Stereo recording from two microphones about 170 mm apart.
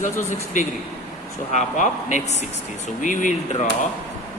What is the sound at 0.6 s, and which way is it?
Speech, 45° left (ahead or behind).